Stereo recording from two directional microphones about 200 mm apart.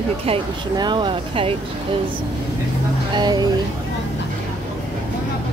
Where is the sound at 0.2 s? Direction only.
25° right (ahead or behind).